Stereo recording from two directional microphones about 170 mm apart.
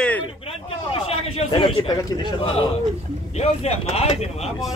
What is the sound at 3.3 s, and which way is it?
Speech, 35° left (ahead or behind).